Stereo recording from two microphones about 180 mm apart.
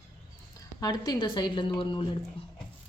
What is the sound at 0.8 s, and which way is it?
Speech, 20° left (ahead or behind).